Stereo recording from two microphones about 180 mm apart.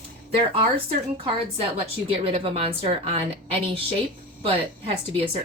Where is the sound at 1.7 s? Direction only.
30° right (ahead or behind).